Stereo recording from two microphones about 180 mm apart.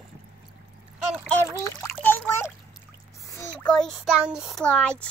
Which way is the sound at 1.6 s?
15° left (ahead or behind).